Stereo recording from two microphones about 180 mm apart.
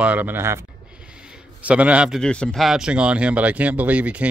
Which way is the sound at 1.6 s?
5° right (ahead or behind).